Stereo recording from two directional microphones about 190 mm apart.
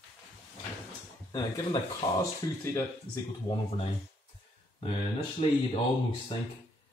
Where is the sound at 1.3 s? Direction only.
20° left (ahead or behind).